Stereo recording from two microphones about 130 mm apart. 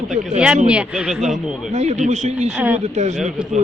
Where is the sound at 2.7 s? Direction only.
60° right (ahead or behind).